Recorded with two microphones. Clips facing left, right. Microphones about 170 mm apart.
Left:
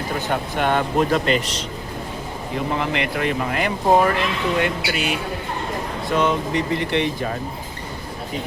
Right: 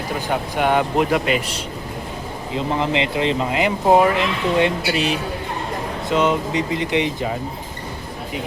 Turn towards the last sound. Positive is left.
turn(degrees=-15)  # may be behind; listen again after turning